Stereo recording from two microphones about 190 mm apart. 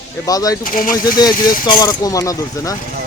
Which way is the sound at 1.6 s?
20° left (ahead or behind).